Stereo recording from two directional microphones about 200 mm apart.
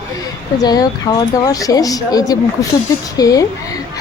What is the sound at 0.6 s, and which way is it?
Speech, 20° left (ahead or behind).